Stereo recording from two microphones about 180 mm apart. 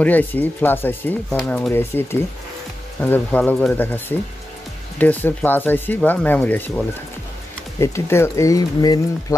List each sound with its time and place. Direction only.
0.0 s speech: 10° left (ahead or behind)
1.7 s speech: 15° left (ahead or behind)
7.8 s speech: 15° left (ahead or behind)